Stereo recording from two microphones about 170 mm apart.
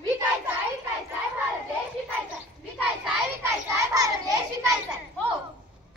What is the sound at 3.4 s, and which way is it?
Children playing, 20° right (ahead or behind).